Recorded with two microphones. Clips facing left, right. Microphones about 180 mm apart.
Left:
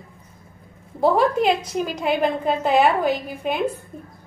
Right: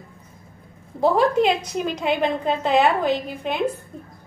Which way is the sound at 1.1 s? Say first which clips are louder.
Right 2 dB; 5° left (ahead or behind).